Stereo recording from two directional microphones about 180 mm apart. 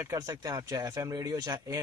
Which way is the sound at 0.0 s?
20° right (ahead or behind).